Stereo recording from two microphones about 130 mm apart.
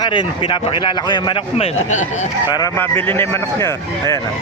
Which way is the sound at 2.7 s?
15° left (ahead or behind).